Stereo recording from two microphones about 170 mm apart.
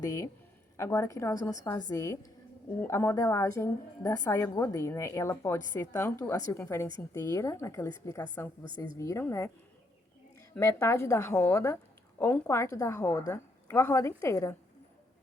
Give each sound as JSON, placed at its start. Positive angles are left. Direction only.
{"t": 0.8, "sound": "a woman's voice", "side_deg": 15}
{"t": 10.5, "sound": "a woman's voice", "side_deg": 15}